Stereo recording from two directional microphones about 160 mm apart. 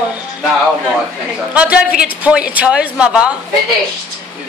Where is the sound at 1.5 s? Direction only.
5° right (ahead or behind).